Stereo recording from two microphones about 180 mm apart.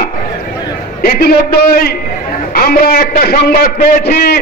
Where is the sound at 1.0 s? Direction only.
55° left (ahead or behind).